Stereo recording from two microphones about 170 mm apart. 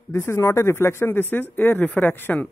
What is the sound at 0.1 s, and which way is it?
A woman's voice, 15° left (ahead or behind).